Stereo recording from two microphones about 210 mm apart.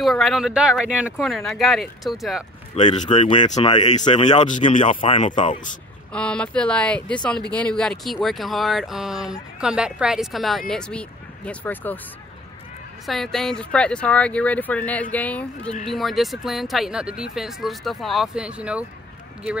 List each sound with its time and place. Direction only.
0.0 s speech: centre (ahead or behind)
2.7 s speech: 25° left (ahead or behind)
4.3 s speech: 35° left (ahead or behind)
6.1 s speech: 5° left (ahead or behind)
13.0 s speech: centre (ahead or behind)